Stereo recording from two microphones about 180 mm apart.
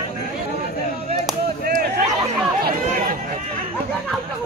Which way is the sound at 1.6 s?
55° right (ahead or behind).